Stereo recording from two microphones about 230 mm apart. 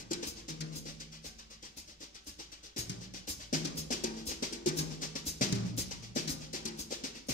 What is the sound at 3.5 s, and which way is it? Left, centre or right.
Drum, left.